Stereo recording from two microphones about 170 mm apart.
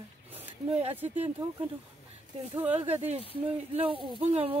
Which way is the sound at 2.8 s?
35° right (ahead or behind).